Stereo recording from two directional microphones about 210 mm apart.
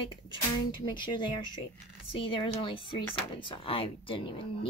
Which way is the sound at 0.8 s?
20° left (ahead or behind).